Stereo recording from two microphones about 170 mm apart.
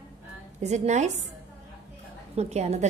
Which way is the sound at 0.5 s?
45° right (ahead or behind).